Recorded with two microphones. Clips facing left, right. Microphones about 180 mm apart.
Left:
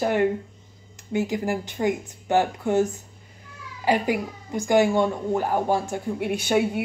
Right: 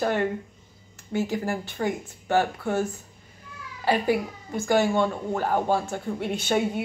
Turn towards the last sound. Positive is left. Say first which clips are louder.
# left 3 dB
turn(degrees=10)  # may be behind; listen again after turning